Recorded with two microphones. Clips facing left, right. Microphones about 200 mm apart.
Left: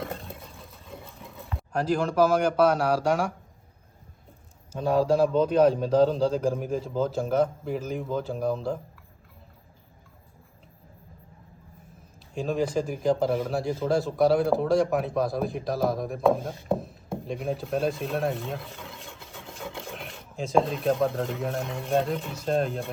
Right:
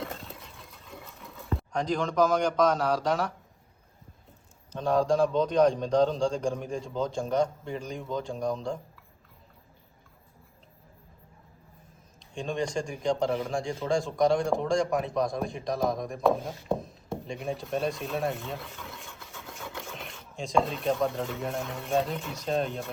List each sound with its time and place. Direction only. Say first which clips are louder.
0.0 s a sound: left 3 dB; 50° left (ahead or behind)
1.5 s speech: left 3 dB; 5° left (ahead or behind)
4.7 s a man's voice: left 2 dB; 10° left (ahead or behind)
12.3 s a man's voice: left 4 dB; 5° left (ahead or behind)
19.3 s a sound: left 4 dB; 30° left (ahead or behind)
20.0 s a man's voice: left 4 dB; centre (ahead or behind)